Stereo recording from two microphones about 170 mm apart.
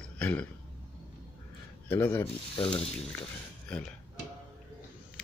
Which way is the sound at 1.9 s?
10° left (ahead or behind).